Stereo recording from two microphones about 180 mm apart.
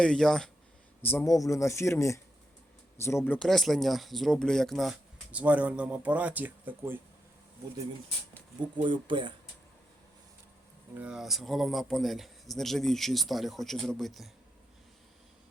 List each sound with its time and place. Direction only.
0.0 s speech: 5° left (ahead or behind)
1.0 s speech: 15° left (ahead or behind)
3.3 s speech: centre (ahead or behind)
8.8 s speech: 25° right (ahead or behind)
10.9 s speech: 5° right (ahead or behind)